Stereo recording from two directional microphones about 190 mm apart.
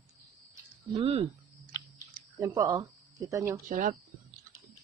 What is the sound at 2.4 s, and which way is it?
Speech, 15° right (ahead or behind).